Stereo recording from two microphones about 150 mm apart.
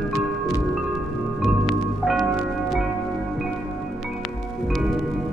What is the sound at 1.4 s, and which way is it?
Music, centre (ahead or behind).